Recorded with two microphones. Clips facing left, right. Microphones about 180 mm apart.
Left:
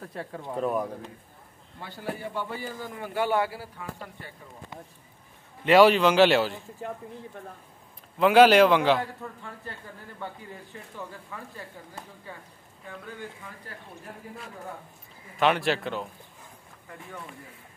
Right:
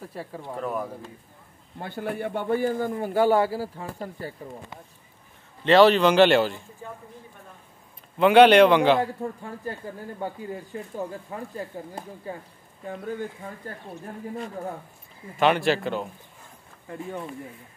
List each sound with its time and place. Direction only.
0.0 s a man's voice: 5° right (ahead or behind)
0.6 s speech: 20° left (ahead or behind)
1.8 s a man's voice: 55° right (ahead or behind); by 4.3 s 40° right (ahead or behind)
5.6 s a man's voice: 10° left (ahead or behind)
6.8 s speech: 80° left
8.2 s a man's voice: centre (ahead or behind)
9.0 s speech: 40° right (ahead or behind)
15.3 s a man's voice: centre (ahead or behind)
16.9 s speech: 25° right (ahead or behind)